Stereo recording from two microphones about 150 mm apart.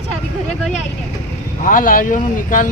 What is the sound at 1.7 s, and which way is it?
Speech, 65° left (ahead or behind).